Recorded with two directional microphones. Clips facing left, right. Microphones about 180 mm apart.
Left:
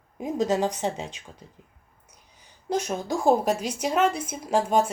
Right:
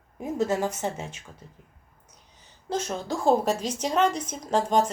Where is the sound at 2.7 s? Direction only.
15° left (ahead or behind).